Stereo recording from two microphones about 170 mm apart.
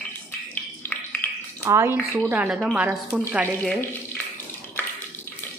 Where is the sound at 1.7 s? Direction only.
15° right (ahead or behind).